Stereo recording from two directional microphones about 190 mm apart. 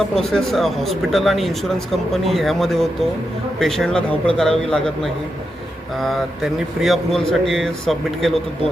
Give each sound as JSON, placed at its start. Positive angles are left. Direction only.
{"t": 0.1, "sound": "speech", "side_deg": 0}